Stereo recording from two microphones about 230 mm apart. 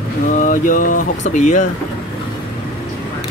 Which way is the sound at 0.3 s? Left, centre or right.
Left.